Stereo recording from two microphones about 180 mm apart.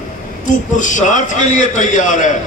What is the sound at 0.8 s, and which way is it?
A man's voice, 45° left (ahead or behind).